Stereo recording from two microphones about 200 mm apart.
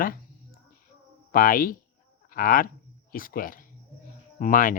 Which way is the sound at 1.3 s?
45° left (ahead or behind).